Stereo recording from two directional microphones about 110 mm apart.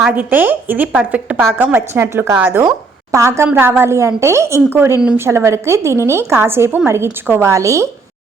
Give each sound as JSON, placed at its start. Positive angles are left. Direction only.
{"t": 0.1, "sound": "a woman's voice", "side_deg": -15}